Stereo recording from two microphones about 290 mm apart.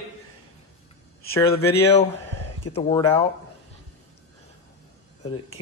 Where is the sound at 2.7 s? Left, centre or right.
Centre.